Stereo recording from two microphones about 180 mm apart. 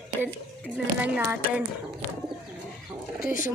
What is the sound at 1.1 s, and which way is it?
Speech, 10° right (ahead or behind).